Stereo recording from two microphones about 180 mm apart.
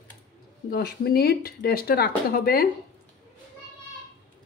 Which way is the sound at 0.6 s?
60° left (ahead or behind).